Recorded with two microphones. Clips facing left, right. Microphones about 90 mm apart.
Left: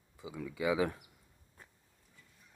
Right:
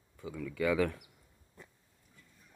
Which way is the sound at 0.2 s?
15° left (ahead or behind).